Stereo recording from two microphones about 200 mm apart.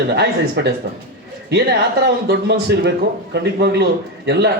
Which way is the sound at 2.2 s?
55° right (ahead or behind).